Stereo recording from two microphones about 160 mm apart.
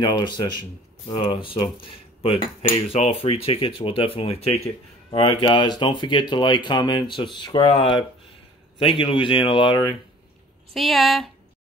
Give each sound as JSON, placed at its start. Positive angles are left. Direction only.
{"t": 0.0, "sound": "speech", "side_deg": 25}
{"t": 10.7, "sound": "speech", "side_deg": 0}